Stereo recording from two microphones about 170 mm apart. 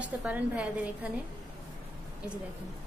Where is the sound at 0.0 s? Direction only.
5° right (ahead or behind).